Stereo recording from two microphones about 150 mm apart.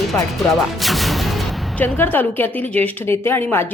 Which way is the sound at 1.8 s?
10° left (ahead or behind).